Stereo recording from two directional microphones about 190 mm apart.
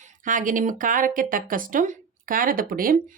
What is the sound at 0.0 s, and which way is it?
A woman's voice, 45° right (ahead or behind).